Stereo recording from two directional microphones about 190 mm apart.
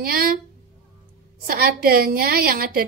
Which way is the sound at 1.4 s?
50° right (ahead or behind).